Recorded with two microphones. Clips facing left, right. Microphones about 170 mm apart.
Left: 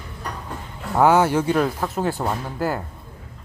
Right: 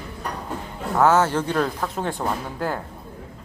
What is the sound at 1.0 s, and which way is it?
Speech, 10° left (ahead or behind).